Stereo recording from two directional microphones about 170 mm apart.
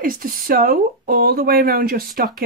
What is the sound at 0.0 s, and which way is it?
Speech, 55° right (ahead or behind).